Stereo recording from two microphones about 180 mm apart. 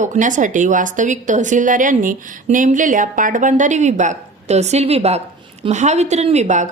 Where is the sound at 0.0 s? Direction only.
45° right (ahead or behind).